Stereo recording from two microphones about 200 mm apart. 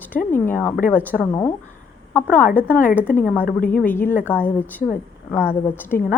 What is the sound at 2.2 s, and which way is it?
Speech, 40° left (ahead or behind).